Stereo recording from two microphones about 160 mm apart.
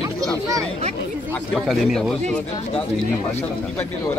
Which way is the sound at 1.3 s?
5° left (ahead or behind).